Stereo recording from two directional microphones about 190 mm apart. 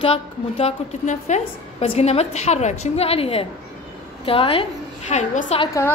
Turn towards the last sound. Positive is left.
turn(degrees=35)  # may be behind; listen again after turning